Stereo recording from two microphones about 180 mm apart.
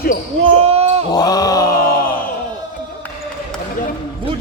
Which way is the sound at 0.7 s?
35° right (ahead or behind).